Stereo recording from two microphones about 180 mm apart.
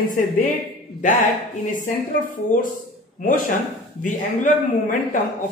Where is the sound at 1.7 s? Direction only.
45° left (ahead or behind).